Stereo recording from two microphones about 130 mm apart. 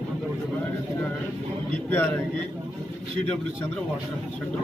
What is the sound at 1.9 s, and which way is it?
Speech, 10° left (ahead or behind).